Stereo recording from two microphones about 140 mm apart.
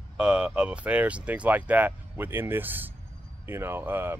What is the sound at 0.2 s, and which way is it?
Speech, 5° right (ahead or behind).